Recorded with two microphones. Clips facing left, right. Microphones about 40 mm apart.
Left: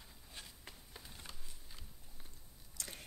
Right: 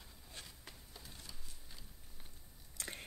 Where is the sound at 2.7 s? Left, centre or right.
Right.